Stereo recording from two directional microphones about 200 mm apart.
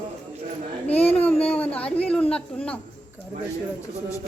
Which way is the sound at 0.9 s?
10° left (ahead or behind).